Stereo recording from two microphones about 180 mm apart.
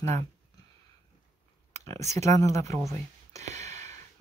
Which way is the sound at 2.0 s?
40° right (ahead or behind).